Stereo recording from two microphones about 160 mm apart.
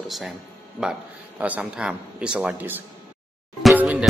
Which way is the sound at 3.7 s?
5° right (ahead or behind).